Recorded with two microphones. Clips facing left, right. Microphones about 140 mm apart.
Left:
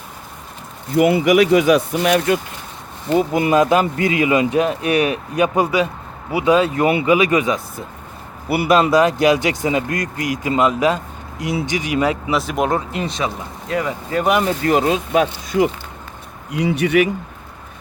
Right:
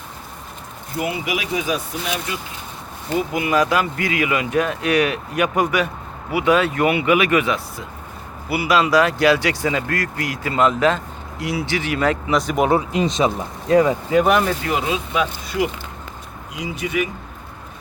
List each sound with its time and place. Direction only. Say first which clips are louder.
0.9 s speech: left 11 dB; 70° left (ahead or behind)
3.2 s speech: left 4 dB; 35° left (ahead or behind)
8.4 s speech: left 4 dB; 55° left (ahead or behind)
8.9 s speech: left 2 dB; 20° left (ahead or behind); by 12.8 s 5° right (ahead or behind)
12.9 s speech: right 4 dB; 20° right (ahead or behind)
14.6 s speech: left 6 dB; 40° left (ahead or behind)
16.5 s speech: left 9 dB; 65° left (ahead or behind)